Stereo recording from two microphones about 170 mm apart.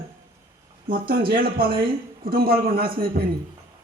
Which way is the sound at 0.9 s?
60° right (ahead or behind).